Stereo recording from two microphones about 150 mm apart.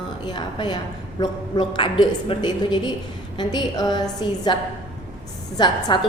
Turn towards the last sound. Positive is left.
turn(degrees=30)  # may be behind; listen again after turning